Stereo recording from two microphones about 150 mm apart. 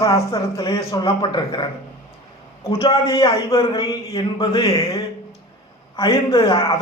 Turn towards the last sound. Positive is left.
turn(degrees=25)  # may be behind; listen again after turning